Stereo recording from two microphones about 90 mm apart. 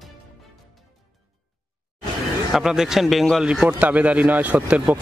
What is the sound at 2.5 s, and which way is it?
Speech, 5° right (ahead or behind).